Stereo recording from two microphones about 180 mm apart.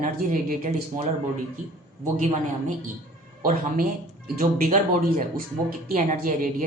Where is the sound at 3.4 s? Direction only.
50° right (ahead or behind).